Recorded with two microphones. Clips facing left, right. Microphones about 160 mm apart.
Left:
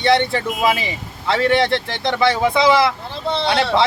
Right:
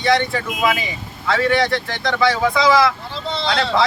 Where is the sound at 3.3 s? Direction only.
60° left (ahead or behind).